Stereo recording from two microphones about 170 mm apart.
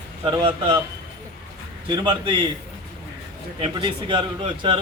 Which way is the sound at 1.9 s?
25° right (ahead or behind).